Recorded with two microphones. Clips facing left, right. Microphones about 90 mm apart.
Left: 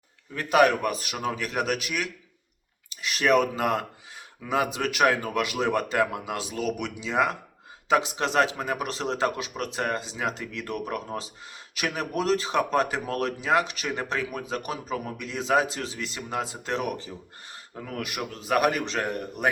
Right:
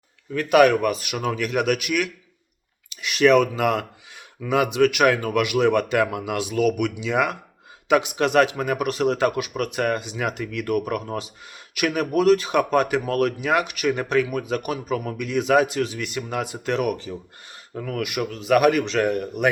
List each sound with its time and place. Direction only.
0.3 s speech: 30° left (ahead or behind)